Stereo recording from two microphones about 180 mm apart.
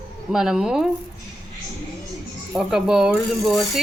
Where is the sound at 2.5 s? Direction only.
5° right (ahead or behind).